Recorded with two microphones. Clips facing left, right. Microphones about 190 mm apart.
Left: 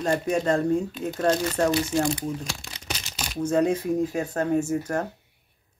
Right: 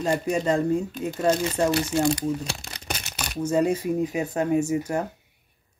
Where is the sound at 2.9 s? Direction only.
60° right (ahead or behind).